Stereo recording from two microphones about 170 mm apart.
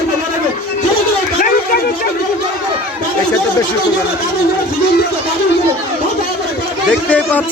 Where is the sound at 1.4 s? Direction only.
55° left (ahead or behind).